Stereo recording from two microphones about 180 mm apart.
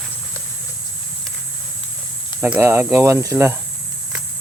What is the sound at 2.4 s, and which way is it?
Speech, 10° right (ahead or behind).